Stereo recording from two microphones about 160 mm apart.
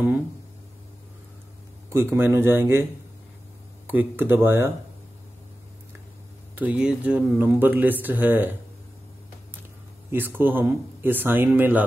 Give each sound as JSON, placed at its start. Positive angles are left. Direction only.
{"t": 1.9, "sound": "a man's voice", "side_deg": -15}
{"t": 3.9, "sound": "a man's voice", "side_deg": -10}
{"t": 6.5, "sound": "a man's voice", "side_deg": -10}
{"t": 10.1, "sound": "a man's voice", "side_deg": -10}